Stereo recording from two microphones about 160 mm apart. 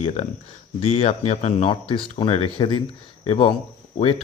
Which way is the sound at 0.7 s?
40° left (ahead or behind).